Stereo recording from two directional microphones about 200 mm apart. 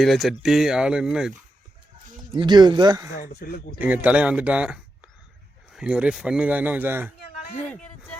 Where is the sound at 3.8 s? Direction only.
5° right (ahead or behind).